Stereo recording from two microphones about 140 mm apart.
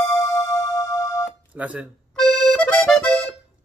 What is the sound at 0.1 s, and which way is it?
Music, 25° left (ahead or behind).